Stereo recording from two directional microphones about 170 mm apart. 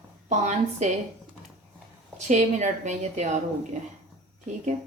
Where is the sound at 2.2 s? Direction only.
45° right (ahead or behind).